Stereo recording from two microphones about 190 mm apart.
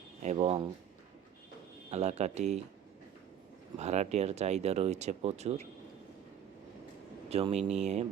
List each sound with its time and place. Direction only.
0.2 s speech: 35° right (ahead or behind)
1.9 s speech: 35° right (ahead or behind)
3.8 s speech: 35° right (ahead or behind)
7.3 s speech: 35° right (ahead or behind)